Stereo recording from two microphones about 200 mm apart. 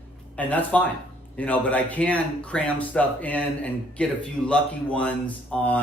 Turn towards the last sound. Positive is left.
turn(degrees=5)  # may be behind; listen again after turning